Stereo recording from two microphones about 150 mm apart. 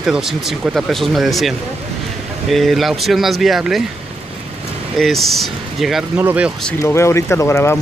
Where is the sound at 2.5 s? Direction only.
Centre (ahead or behind).